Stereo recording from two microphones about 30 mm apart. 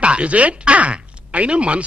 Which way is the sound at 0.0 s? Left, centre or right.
Right.